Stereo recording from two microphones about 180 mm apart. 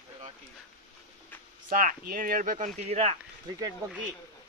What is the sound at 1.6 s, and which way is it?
Speech, 50° right (ahead or behind).